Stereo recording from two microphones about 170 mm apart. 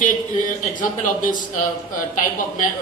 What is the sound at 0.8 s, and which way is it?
A man's voice, 50° left (ahead or behind).